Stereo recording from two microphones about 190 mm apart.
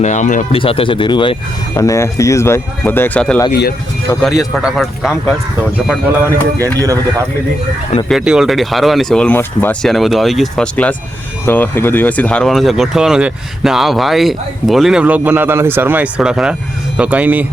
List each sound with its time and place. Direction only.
0.0 s speech: 40° left (ahead or behind)
0.6 s speech: 30° left (ahead or behind); by 3.4 s 10° left (ahead or behind)
3.5 s speech: 55° left (ahead or behind)
4.2 s speech: centre (ahead or behind)
6.6 s speech: 15° right (ahead or behind)
8.0 s speech: centre (ahead or behind)